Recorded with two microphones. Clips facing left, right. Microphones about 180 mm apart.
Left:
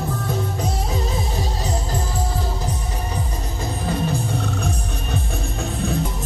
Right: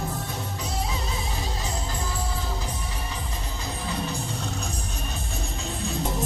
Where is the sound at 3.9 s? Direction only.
60° left (ahead or behind).